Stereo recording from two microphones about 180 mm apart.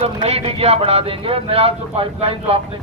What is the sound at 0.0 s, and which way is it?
A man's voice, 35° right (ahead or behind).